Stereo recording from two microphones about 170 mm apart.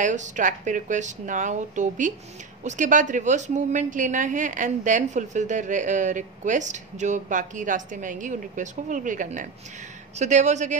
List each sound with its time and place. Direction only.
0.0 s a woman's voice: 45° right (ahead or behind)